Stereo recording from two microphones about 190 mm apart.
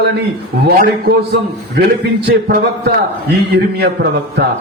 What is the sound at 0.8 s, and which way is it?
A man's voice, 55° right (ahead or behind).